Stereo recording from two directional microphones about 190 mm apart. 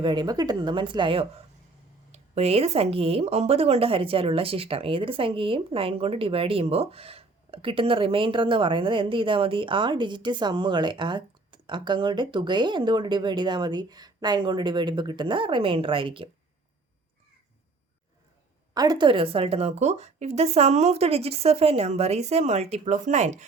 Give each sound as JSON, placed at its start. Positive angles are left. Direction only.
{"t": 0.0, "sound": "speech", "side_deg": -25}
{"t": 18.7, "sound": "a woman's voice", "side_deg": -20}